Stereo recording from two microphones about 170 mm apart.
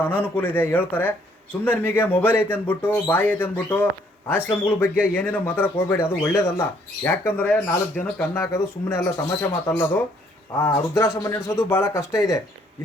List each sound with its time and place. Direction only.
0.0 s speech: 10° left (ahead or behind)